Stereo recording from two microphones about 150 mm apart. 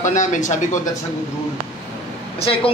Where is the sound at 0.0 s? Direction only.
55° left (ahead or behind).